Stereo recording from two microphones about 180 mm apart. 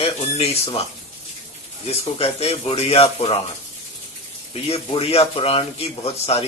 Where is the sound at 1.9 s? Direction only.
35° left (ahead or behind).